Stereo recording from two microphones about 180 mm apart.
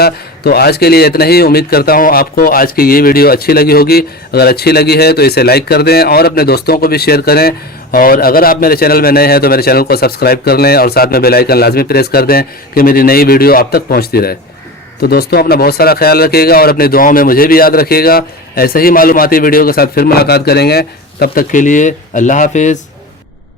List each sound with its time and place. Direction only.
0.0 s a man's voice: 60° left (ahead or behind); by 22.8 s 40° left (ahead or behind)